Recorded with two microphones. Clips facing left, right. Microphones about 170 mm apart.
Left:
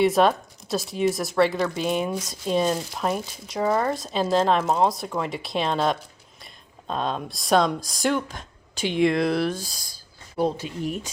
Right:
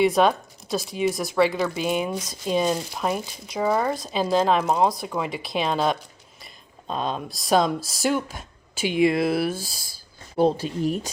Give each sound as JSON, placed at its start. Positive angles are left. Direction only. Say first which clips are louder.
{"t": 0.0, "sound": "speech", "louder": "even", "side_deg": 0}
{"t": 10.3, "sound": "speech", "louder": "right 4 dB", "side_deg": -30}